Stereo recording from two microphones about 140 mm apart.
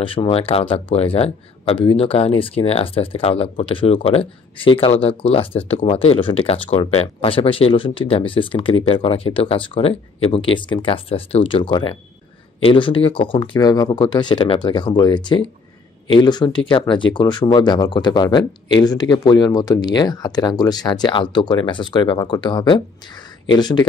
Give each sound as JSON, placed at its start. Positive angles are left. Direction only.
{"t": 0.0, "sound": "speech", "side_deg": 40}